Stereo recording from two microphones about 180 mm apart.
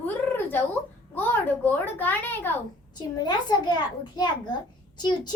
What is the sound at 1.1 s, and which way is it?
A child's voice, 10° left (ahead or behind).